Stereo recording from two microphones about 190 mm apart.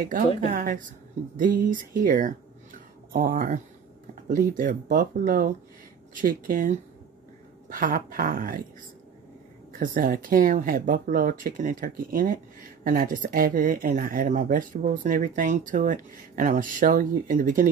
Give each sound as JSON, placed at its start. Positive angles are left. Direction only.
{"t": 0.5, "sound": "speech", "side_deg": -45}
{"t": 9.7, "sound": "speech", "side_deg": -45}